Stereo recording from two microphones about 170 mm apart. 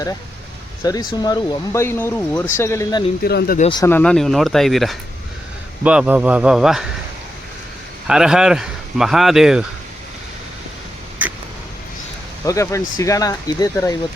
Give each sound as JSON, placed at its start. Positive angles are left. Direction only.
{"t": 0.9, "sound": "speech", "side_deg": 25}
{"t": 3.2, "sound": "speech", "side_deg": 65}
{"t": 3.8, "sound": "speech", "side_deg": 10}
{"t": 8.0, "sound": "speech", "side_deg": -5}
{"t": 12.5, "sound": "speech", "side_deg": 20}